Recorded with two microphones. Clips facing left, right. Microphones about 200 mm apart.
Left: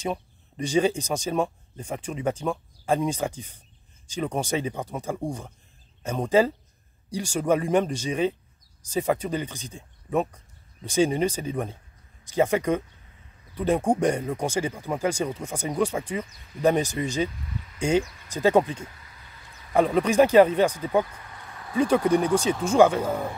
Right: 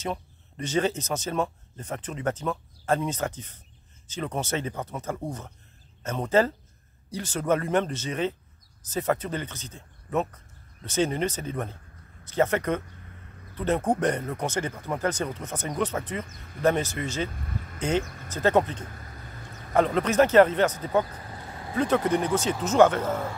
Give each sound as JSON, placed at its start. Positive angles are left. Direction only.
{"t": 0.0, "sound": "speech", "side_deg": 10}
{"t": 16.3, "sound": "speech", "side_deg": -55}
{"t": 16.6, "sound": "speech", "side_deg": 15}
{"t": 17.3, "sound": "speech", "side_deg": -50}
{"t": 17.7, "sound": "speech", "side_deg": 10}
{"t": 18.0, "sound": "speech", "side_deg": -50}
{"t": 18.3, "sound": "speech", "side_deg": 10}
{"t": 18.9, "sound": "a sound", "side_deg": -50}
{"t": 19.7, "sound": "speech", "side_deg": 10}
{"t": 21.1, "sound": "vehicle", "side_deg": -35}
{"t": 21.7, "sound": "speech", "side_deg": 10}